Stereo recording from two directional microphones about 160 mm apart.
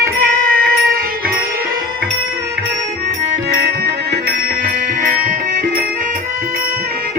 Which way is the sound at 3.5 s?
75° right (ahead or behind).